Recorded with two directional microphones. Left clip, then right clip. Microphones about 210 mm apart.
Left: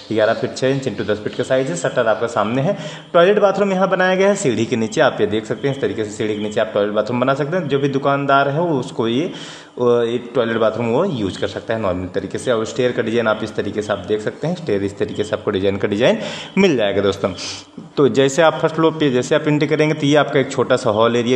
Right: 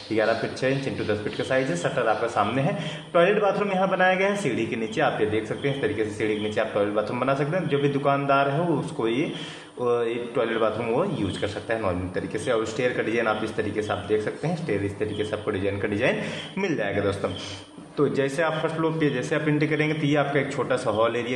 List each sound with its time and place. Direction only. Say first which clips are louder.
0.1 s a man's voice: left 7 dB; 45° left (ahead or behind)
9.8 s a man's voice: left 8 dB; 45° left (ahead or behind)